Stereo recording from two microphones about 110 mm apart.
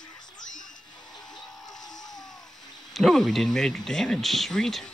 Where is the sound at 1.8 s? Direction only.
35° left (ahead or behind).